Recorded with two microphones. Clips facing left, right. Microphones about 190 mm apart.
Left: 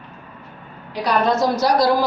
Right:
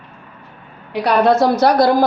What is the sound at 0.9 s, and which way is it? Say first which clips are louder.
A woman's voice: right 5 dB; 60° right (ahead or behind).